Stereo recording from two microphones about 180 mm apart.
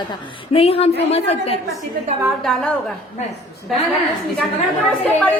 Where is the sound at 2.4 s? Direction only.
Centre (ahead or behind).